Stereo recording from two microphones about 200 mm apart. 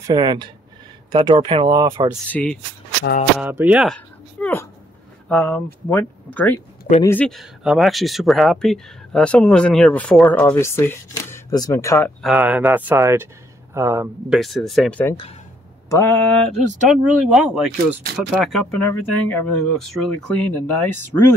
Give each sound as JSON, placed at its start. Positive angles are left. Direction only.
{"t": 0.0, "sound": "speech", "side_deg": -20}
{"t": 2.2, "sound": "speech", "side_deg": 5}
{"t": 3.4, "sound": "speech", "side_deg": -10}
{"t": 12.2, "sound": "speech", "side_deg": -5}
{"t": 14.4, "sound": "speech", "side_deg": 0}